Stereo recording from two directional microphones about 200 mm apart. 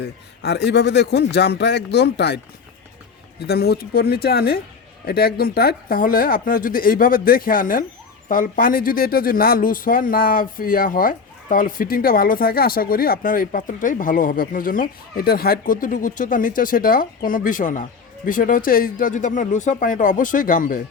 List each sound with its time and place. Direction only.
0.0 s a man's voice: 60° left (ahead or behind)
3.4 s speech: 55° left (ahead or behind)